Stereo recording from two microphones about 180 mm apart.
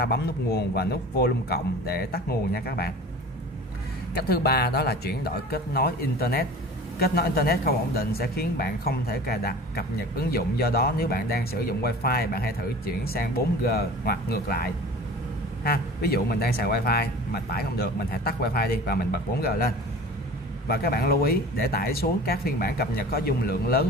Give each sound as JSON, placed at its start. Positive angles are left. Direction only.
{"t": 0.0, "sound": "speech", "side_deg": 65}
{"t": 4.2, "sound": "speech", "side_deg": 60}
{"t": 20.6, "sound": "speech", "side_deg": 60}